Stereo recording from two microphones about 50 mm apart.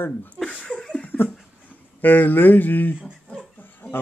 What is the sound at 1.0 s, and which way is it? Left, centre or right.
Laughter, left.